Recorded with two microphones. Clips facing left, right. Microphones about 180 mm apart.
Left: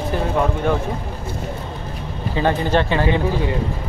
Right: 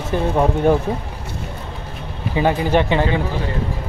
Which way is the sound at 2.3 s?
10° right (ahead or behind).